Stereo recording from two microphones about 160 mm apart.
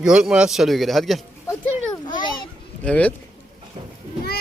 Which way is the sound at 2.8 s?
10° left (ahead or behind).